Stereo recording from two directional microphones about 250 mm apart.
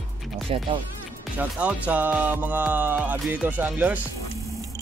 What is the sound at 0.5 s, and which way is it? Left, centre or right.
Speech, right.